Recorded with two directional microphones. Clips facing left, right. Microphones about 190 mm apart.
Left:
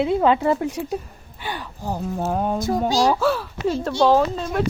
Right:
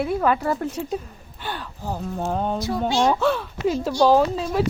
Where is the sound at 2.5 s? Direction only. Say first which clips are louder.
Left 3 dB; 45° left (ahead or behind).